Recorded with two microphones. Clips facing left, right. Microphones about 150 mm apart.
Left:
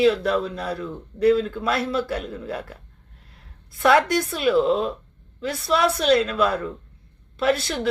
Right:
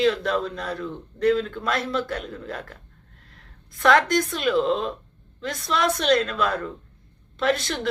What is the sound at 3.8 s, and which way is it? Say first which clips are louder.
Speech: left 1 dB; 10° left (ahead or behind).